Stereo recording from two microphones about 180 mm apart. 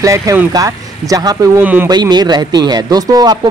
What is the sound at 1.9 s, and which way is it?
Speech, 25° right (ahead or behind).